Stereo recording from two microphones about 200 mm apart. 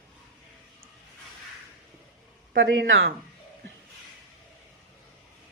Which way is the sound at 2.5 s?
60° right (ahead or behind).